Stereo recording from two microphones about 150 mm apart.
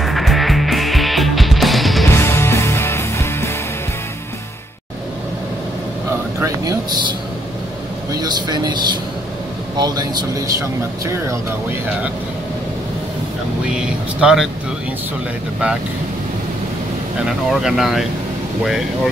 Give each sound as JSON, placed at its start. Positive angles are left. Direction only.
{"t": 0.0, "sound": "music", "side_deg": 0}
{"t": 2.0, "sound": "music", "side_deg": 15}
{"t": 6.4, "sound": "a sound", "side_deg": -25}
{"t": 8.1, "sound": "speech", "side_deg": -25}
{"t": 9.8, "sound": "a man's voice", "side_deg": -25}
{"t": 13.7, "sound": "speech", "side_deg": -5}
{"t": 17.5, "sound": "speech", "side_deg": 0}